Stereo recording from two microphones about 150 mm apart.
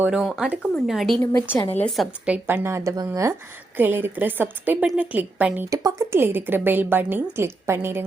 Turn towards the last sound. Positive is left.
turn(degrees=-15)  # may be behind; listen again after turning